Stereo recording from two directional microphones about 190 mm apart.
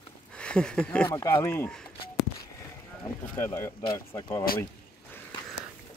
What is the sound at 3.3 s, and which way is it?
Speech, 15° left (ahead or behind).